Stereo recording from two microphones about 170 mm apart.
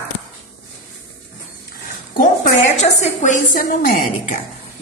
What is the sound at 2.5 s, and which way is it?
A woman's voice, 40° left (ahead or behind).